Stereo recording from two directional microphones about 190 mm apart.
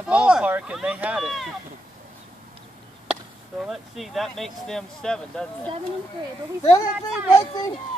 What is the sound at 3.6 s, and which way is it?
Speech, centre (ahead or behind).